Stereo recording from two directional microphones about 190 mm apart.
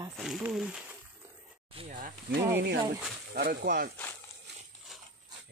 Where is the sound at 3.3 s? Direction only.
55° right (ahead or behind).